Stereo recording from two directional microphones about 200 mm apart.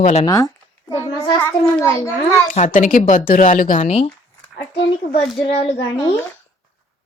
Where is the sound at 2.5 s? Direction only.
40° left (ahead or behind).